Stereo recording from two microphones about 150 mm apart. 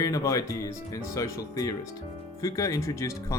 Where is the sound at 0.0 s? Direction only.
20° left (ahead or behind).